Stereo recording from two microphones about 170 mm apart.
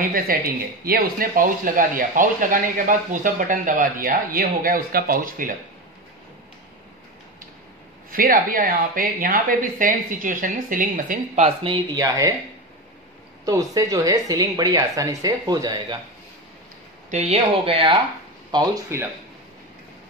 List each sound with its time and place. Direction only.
0.3 s speech: 55° right (ahead or behind)
8.1 s speech: 55° right (ahead or behind)
11.4 s speech: 30° right (ahead or behind)
13.5 s speech: 20° right (ahead or behind)
17.1 s speech: 40° right (ahead or behind)
18.9 s a man's voice: 15° right (ahead or behind)